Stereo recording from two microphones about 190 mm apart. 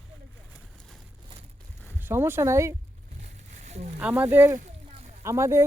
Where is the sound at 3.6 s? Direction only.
35° right (ahead or behind).